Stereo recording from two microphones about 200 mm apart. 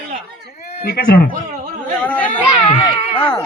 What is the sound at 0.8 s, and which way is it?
Speech, 50° left (ahead or behind).